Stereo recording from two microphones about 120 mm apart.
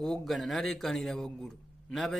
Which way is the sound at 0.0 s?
Centre (ahead or behind).